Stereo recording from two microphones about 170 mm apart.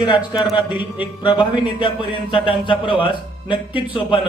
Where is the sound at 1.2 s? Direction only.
25° left (ahead or behind).